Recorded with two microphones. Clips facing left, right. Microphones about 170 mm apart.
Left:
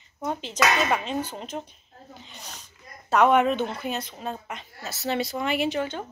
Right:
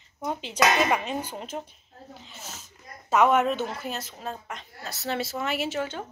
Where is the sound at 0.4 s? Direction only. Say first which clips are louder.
Right 2 dB; 15° right (ahead or behind).